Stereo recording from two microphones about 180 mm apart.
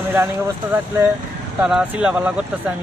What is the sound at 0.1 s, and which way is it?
Speech, 10° right (ahead or behind).